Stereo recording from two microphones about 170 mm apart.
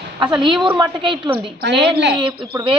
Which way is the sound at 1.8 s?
90° right.